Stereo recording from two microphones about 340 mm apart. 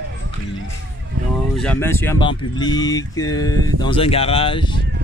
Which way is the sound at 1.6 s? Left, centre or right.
Centre.